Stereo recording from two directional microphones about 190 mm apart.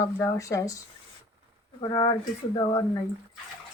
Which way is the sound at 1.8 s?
25° left (ahead or behind).